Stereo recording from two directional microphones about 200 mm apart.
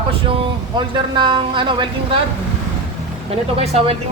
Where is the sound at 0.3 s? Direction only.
25° right (ahead or behind).